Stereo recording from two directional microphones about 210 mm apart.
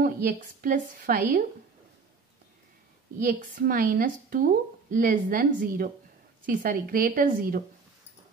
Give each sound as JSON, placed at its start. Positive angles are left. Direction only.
{"t": 0.0, "sound": "speech", "side_deg": -45}
{"t": 3.2, "sound": "a woman's voice", "side_deg": -40}